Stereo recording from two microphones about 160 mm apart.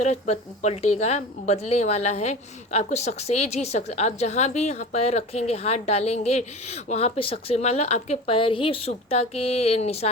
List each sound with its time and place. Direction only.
0.0 s a woman's voice: 45° left (ahead or behind)